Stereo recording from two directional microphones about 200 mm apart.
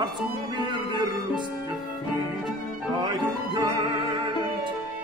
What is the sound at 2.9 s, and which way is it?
Music, 20° right (ahead or behind).